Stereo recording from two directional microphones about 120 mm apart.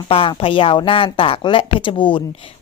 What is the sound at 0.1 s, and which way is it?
A woman's voice, 50° left (ahead or behind).